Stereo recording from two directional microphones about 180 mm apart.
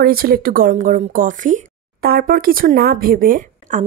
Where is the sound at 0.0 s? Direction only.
55° right (ahead or behind).